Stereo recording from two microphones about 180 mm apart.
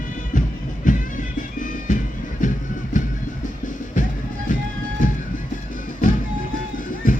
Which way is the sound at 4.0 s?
45° left (ahead or behind).